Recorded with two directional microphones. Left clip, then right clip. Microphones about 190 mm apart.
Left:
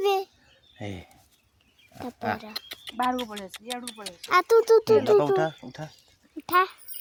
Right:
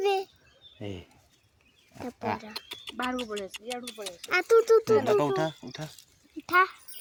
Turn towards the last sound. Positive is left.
turn(degrees=30)  # may be behind; listen again after turning